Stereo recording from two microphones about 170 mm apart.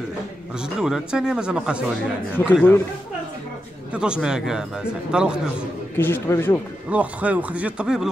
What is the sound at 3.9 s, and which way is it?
Speech, 5° right (ahead or behind).